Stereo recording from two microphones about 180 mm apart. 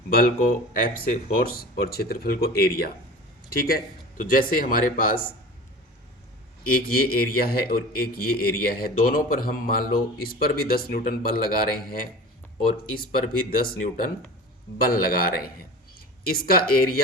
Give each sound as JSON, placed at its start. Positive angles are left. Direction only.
{"t": 0.7, "sound": "a man's voice", "side_deg": 50}
{"t": 6.7, "sound": "a man's voice", "side_deg": 55}